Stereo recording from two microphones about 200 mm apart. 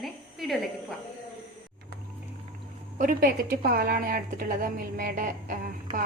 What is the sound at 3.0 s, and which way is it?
A woman's voice, 45° right (ahead or behind).